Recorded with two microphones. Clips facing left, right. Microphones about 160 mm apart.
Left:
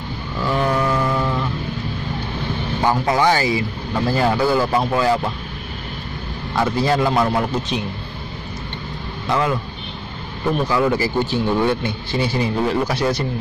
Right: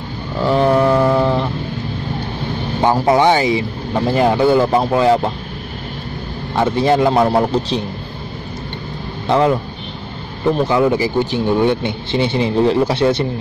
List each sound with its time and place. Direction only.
0.4 s vehicle: 30° right (ahead or behind)
2.8 s speech: 20° right (ahead or behind)
6.5 s speech: 25° right (ahead or behind)
9.3 s speech: 30° right (ahead or behind)